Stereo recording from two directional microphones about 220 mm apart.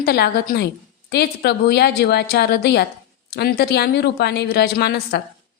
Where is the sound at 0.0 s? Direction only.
45° left (ahead or behind).